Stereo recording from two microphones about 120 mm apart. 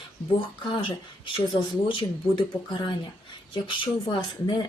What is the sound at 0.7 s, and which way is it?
Speech, 45° left (ahead or behind).